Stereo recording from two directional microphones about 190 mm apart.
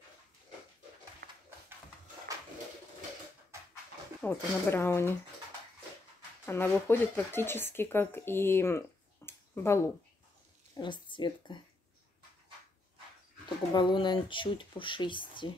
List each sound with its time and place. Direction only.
1.2 s a sound: 60° right (ahead or behind)
4.2 s speech: 10° left (ahead or behind)
6.4 s speech: 10° left (ahead or behind)
10.8 s speech: 25° left (ahead or behind)
13.7 s speech: 25° left (ahead or behind)